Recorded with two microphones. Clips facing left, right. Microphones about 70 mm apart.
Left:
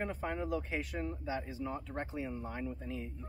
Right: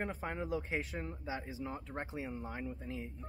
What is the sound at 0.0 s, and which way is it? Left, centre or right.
Speech, right.